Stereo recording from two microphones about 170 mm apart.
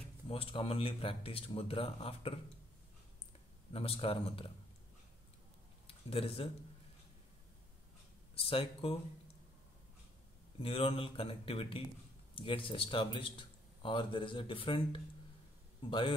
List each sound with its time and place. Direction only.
0.3 s speech: 35° left (ahead or behind)
3.7 s speech: 35° left (ahead or behind)
5.9 s speech: 35° left (ahead or behind)
8.4 s speech: 35° left (ahead or behind)
10.6 s a man's voice: 35° left (ahead or behind)